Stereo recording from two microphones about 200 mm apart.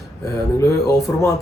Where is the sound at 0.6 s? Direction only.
15° left (ahead or behind).